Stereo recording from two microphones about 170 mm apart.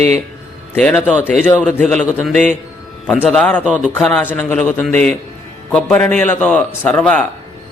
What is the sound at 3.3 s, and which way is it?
Speech, 5° left (ahead or behind).